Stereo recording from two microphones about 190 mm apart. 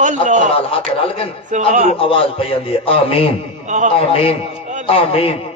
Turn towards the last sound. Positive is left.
turn(degrees=30)  # may be behind; listen again after turning